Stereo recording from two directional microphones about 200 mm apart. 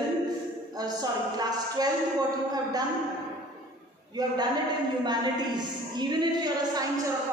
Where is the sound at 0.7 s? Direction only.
20° right (ahead or behind).